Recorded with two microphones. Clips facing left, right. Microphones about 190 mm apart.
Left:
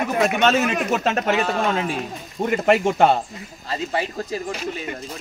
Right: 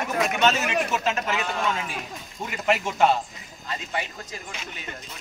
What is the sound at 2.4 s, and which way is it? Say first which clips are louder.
Speech: left 8 dB; 55° left (ahead or behind).